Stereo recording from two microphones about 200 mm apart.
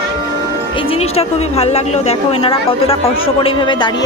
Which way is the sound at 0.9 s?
30° left (ahead or behind).